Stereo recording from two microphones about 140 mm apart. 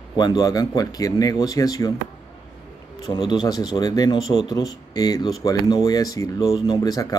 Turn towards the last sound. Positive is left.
turn(degrees=25)  # may be behind; listen again after turning